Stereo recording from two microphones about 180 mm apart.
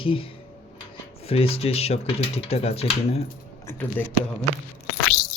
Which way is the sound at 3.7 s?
10° left (ahead or behind).